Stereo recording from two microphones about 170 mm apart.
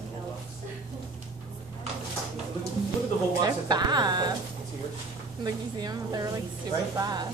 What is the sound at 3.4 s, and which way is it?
Music, 25° right (ahead or behind).